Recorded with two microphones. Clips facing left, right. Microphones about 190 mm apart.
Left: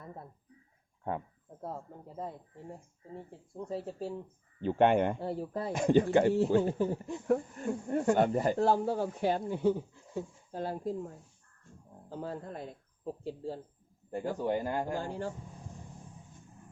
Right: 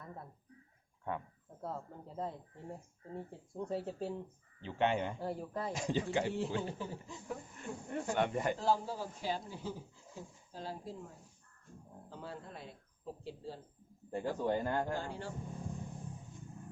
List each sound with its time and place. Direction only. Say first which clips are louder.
1.6 s speech: left 2 dB; 10° left (ahead or behind)
3.5 s speech: left 1 dB; centre (ahead or behind)
4.6 s speech: left 8 dB; 50° left (ahead or behind)
5.2 s speech: left 4 dB; 30° left (ahead or behind)
5.7 s speech: left 11 dB; 55° left (ahead or behind); by 8.5 s 35° left (ahead or behind)
8.5 s speech: left 6 dB; 60° left (ahead or behind); by 13.6 s 45° left (ahead or behind)
14.2 s speech: left 2 dB; 15° left (ahead or behind)
14.9 s speech: left 5 dB; 45° left (ahead or behind)